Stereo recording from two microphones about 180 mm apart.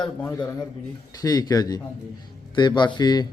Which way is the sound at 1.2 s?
20° left (ahead or behind).